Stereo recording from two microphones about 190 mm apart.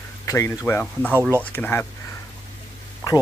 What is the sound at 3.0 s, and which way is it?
Speech, 20° left (ahead or behind).